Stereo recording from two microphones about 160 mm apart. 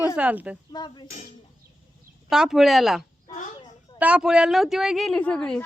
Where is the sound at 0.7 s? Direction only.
25° left (ahead or behind).